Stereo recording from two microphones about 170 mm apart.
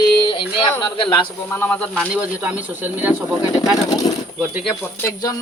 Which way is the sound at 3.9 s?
20° left (ahead or behind).